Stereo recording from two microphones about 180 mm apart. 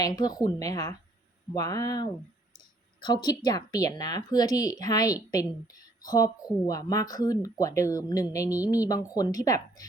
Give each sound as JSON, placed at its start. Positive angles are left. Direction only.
{"t": 0.2, "sound": "a woman's voice", "side_deg": 20}